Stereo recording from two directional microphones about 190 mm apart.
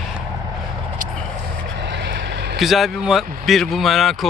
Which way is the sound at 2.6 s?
Centre (ahead or behind).